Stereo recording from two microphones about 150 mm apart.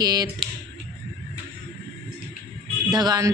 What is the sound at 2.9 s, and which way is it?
Speech, 25° right (ahead or behind).